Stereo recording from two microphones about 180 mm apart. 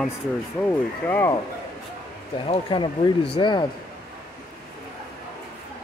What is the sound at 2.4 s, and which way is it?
Speech, 30° left (ahead or behind).